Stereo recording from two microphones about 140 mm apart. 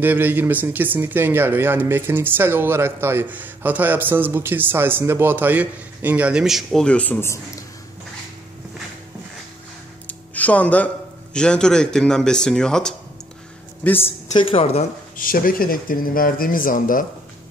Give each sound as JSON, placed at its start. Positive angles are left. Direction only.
{"t": 0.0, "sound": "speech", "side_deg": -15}
{"t": 10.0, "sound": "a sound", "side_deg": 10}
{"t": 11.3, "sound": "speech", "side_deg": 5}
{"t": 13.8, "sound": "a woman's voice", "side_deg": 15}
{"t": 14.3, "sound": "a woman's voice", "side_deg": 45}
{"t": 15.1, "sound": "speech", "side_deg": 90}